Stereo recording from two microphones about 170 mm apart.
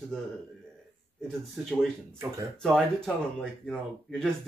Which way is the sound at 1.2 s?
Centre (ahead or behind).